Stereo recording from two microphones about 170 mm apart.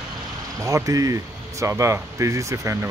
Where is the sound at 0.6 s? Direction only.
20° right (ahead or behind).